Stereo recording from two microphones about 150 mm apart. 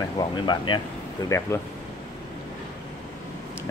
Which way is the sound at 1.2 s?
20° left (ahead or behind).